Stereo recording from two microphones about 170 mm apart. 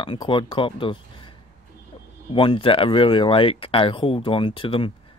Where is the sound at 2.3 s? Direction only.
30° left (ahead or behind).